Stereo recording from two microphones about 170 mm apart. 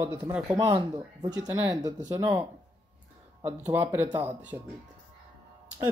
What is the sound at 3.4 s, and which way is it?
Speech, 20° right (ahead or behind).